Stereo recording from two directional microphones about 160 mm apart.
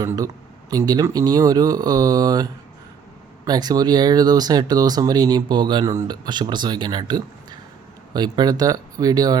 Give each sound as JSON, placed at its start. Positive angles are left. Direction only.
{"t": 0.7, "sound": "speech", "side_deg": -25}